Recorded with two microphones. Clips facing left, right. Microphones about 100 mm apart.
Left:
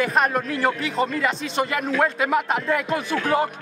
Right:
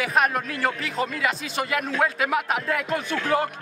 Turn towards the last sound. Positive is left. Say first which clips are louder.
# left 2 dB
turn(degrees=15)  # may be behind; listen again after turning